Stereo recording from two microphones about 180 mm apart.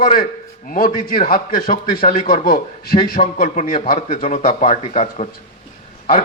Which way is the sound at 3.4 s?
40° left (ahead or behind).